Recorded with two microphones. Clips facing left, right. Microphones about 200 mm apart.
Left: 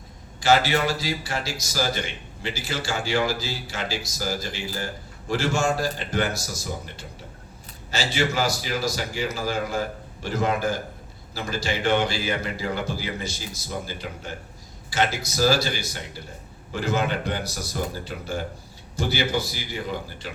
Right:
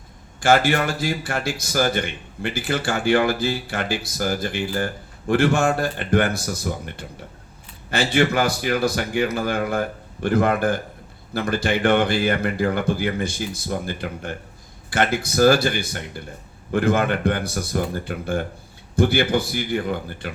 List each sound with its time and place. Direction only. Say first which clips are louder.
0.3 s a man's voice: right 3 dB; 50° right (ahead or behind)